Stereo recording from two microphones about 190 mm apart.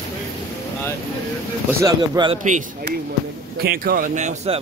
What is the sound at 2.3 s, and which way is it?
Speech, 40° right (ahead or behind).